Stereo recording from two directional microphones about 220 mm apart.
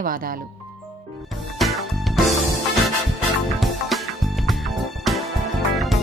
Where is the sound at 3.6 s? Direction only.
Centre (ahead or behind).